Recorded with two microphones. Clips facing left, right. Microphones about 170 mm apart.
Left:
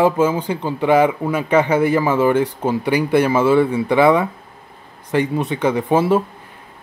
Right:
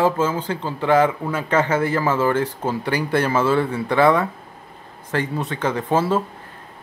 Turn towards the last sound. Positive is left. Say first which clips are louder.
# left 4 dB
turn(degrees=15)  # may be behind; listen again after turning